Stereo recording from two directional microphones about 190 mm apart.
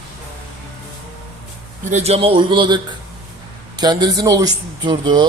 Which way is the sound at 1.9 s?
35° right (ahead or behind).